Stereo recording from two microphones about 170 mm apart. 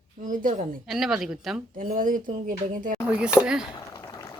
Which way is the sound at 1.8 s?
55° right (ahead or behind).